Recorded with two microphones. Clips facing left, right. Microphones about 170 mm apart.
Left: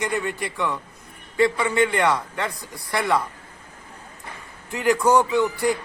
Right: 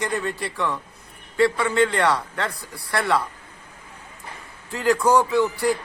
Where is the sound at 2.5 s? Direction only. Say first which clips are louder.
Even; 30° right (ahead or behind).